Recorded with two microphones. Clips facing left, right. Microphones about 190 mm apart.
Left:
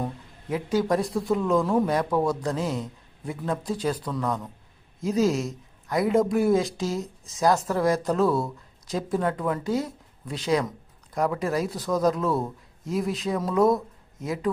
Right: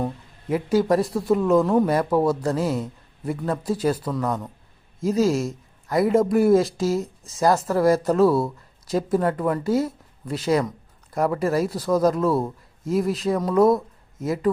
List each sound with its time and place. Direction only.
0.5 s speech: 5° right (ahead or behind)